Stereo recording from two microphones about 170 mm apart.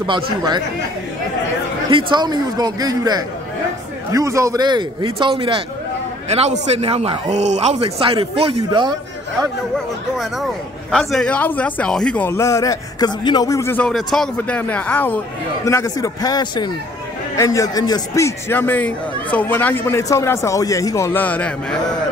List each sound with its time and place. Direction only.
0.0 s a man's voice: 25° right (ahead or behind)
1.9 s a man's voice: 30° right (ahead or behind)
10.1 s speech: centre (ahead or behind)